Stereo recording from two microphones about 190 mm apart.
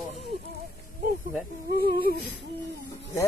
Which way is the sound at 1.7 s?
55° left (ahead or behind).